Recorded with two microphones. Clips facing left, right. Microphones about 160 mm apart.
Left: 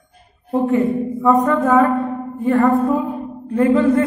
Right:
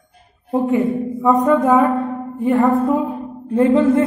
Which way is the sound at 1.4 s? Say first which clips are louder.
Right 1 dB; 20° right (ahead or behind).